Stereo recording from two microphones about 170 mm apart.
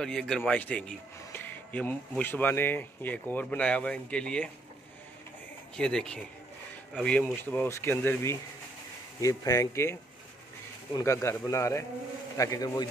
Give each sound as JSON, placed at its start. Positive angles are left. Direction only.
{"t": 0.0, "sound": "a man's voice", "side_deg": 5}
{"t": 5.8, "sound": "a man's voice", "side_deg": 5}